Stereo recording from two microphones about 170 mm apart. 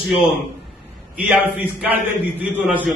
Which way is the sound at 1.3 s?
10° right (ahead or behind).